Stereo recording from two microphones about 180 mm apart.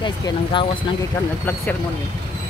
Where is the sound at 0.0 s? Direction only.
25° left (ahead or behind).